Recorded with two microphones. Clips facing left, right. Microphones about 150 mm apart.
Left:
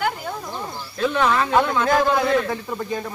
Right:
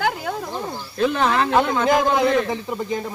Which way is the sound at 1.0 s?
35° right (ahead or behind).